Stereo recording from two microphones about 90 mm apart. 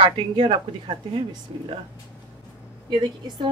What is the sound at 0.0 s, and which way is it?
Speech, 70° right (ahead or behind).